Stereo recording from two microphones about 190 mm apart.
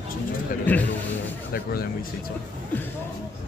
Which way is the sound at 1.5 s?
55° left (ahead or behind).